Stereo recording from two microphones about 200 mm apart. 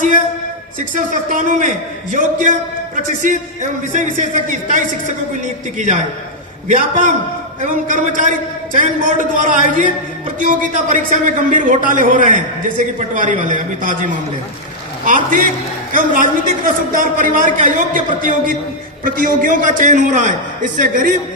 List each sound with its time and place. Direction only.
0.8 s a man's voice: 40° right (ahead or behind)
2.9 s a man's voice: 40° right (ahead or behind)